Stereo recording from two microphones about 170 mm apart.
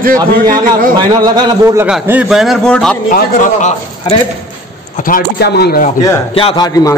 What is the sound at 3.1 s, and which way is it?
Speech, 55° left (ahead or behind).